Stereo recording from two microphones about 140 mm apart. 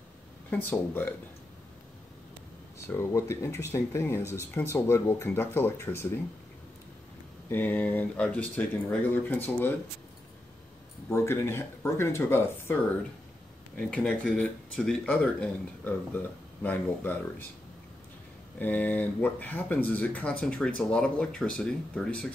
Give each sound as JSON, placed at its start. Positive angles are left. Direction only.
{"t": 0.5, "sound": "speech", "side_deg": 15}
{"t": 2.9, "sound": "speech", "side_deg": 20}
{"t": 4.2, "sound": "speech", "side_deg": -15}
{"t": 4.6, "sound": "speech", "side_deg": 15}
{"t": 7.4, "sound": "speech", "side_deg": 15}
{"t": 11.1, "sound": "speech", "side_deg": 20}
{"t": 13.7, "sound": "speech", "side_deg": 10}
{"t": 18.6, "sound": "speech", "side_deg": 10}